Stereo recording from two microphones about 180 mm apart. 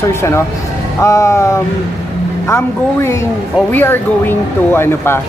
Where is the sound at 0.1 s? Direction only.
15° left (ahead or behind).